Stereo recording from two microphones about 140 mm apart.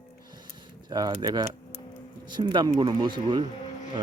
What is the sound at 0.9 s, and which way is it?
Speech, 30° right (ahead or behind).